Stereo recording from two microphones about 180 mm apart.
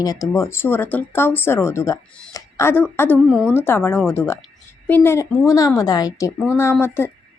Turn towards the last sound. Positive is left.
turn(degrees=15)  # may be behind; listen again after turning